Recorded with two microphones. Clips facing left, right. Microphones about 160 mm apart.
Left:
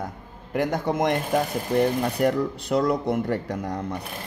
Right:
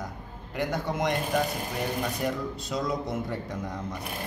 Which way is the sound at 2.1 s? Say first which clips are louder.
Left 8 dB; 60° left (ahead or behind).